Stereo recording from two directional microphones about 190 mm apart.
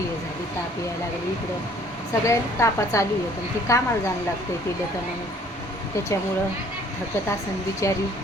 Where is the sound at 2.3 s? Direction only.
15° left (ahead or behind).